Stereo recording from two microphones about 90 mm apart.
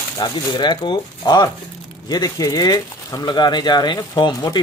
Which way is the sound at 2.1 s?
45° left (ahead or behind).